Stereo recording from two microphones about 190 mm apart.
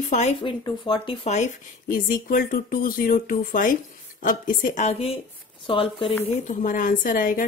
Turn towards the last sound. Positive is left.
turn(degrees=45)  # may be behind; listen again after turning